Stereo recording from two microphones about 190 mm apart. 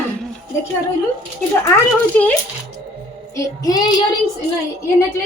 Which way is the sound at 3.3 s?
20° left (ahead or behind).